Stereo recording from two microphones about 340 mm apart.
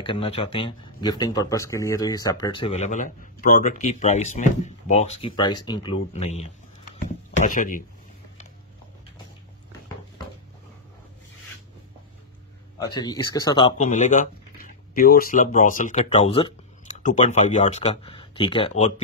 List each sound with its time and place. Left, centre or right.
0.0 s speech: centre
12.7 s speech: centre